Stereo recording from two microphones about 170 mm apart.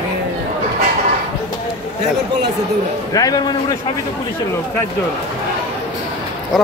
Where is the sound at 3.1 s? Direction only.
20° left (ahead or behind).